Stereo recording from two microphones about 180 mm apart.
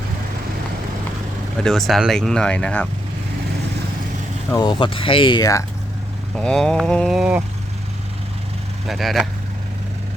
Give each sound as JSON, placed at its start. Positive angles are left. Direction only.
{"t": 1.5, "sound": "speech", "side_deg": 0}
{"t": 4.5, "sound": "speech", "side_deg": 25}
{"t": 6.3, "sound": "speech", "side_deg": 5}
{"t": 8.9, "sound": "speech", "side_deg": 0}